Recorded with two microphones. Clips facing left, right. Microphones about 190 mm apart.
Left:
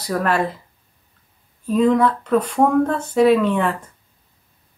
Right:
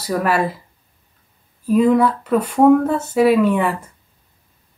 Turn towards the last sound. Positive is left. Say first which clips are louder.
# right 3 dB
turn(degrees=-10)  # may be behind; listen again after turning